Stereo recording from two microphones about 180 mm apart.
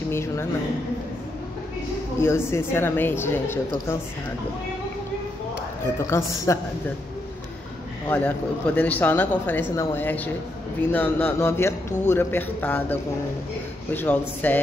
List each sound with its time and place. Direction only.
0.1 s speech: 15° left (ahead or behind)
2.1 s speech: 15° left (ahead or behind)
6.0 s speech: 15° left (ahead or behind)
8.1 s speech: 10° left (ahead or behind)
13.9 s speech: 10° left (ahead or behind)